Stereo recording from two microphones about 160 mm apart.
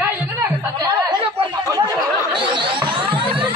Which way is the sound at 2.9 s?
30° right (ahead or behind).